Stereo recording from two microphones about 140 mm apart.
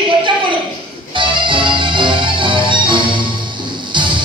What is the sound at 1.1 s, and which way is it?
Music, 35° right (ahead or behind).